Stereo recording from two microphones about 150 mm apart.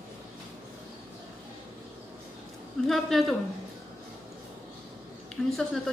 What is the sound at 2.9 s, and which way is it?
Speech, centre (ahead or behind).